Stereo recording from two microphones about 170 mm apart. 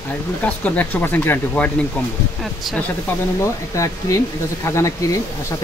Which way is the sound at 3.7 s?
20° left (ahead or behind).